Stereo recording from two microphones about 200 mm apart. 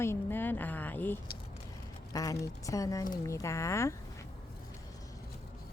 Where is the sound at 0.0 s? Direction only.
10° left (ahead or behind).